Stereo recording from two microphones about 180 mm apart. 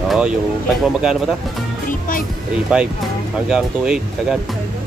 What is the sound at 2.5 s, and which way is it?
Speech, 5° right (ahead or behind).